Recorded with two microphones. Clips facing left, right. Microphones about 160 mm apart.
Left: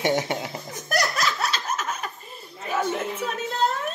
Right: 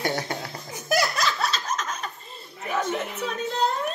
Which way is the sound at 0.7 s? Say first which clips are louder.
Right 3 dB; 5° right (ahead or behind).